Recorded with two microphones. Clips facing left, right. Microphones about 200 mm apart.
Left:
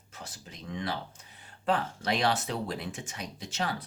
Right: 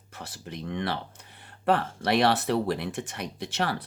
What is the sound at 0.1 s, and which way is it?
Speech, 65° right (ahead or behind).